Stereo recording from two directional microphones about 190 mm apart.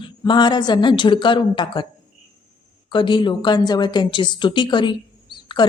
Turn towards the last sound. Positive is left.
turn(degrees=25)  # may be behind; listen again after turning